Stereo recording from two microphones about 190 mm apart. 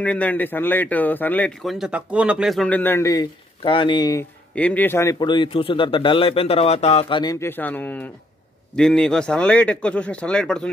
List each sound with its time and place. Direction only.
0.0 s speech: 5° left (ahead or behind)
4.6 s a man's voice: 10° left (ahead or behind)